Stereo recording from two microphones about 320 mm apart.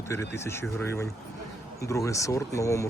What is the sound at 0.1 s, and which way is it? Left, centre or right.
A man's voice, centre.